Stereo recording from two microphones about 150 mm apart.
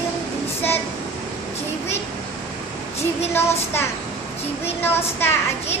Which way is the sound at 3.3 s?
15° left (ahead or behind).